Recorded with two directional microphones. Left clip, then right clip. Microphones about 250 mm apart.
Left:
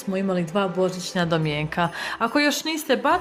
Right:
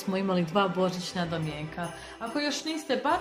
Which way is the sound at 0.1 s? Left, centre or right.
Centre.